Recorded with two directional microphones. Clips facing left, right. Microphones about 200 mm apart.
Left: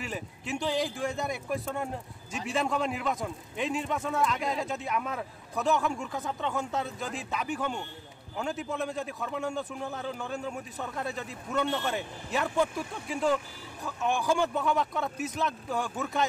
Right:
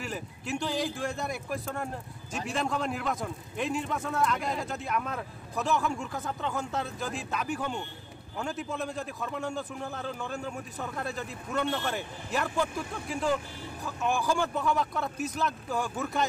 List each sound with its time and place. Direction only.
0.0 s a man's voice: centre (ahead or behind)